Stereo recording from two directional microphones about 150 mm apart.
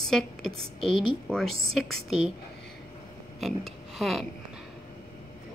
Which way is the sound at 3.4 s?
Centre (ahead or behind).